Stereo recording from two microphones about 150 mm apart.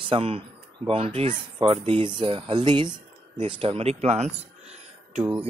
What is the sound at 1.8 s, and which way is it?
Mantra, 35° right (ahead or behind).